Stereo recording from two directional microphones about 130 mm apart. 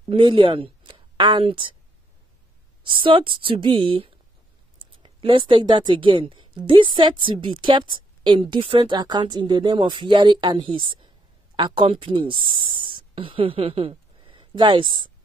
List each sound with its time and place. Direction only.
0.1 s speech: 40° right (ahead or behind)
3.0 s a woman's voice: 40° right (ahead or behind)